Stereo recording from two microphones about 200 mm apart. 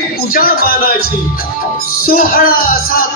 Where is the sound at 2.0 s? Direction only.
45° left (ahead or behind).